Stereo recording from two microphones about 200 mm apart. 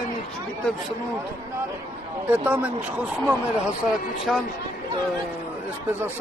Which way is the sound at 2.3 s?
10° right (ahead or behind).